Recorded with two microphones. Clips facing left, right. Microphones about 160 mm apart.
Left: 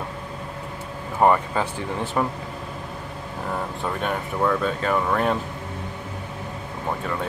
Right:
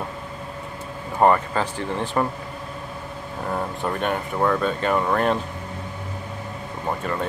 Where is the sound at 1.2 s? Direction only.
5° left (ahead or behind).